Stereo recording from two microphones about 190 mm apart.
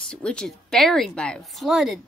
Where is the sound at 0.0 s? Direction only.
5° left (ahead or behind).